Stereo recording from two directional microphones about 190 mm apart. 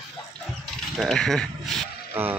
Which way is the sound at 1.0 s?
Centre (ahead or behind).